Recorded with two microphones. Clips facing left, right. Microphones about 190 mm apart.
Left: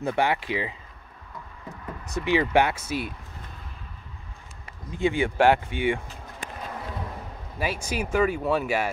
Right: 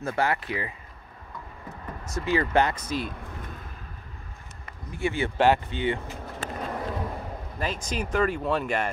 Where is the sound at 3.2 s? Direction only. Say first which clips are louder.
Right 4 dB; 50° right (ahead or behind).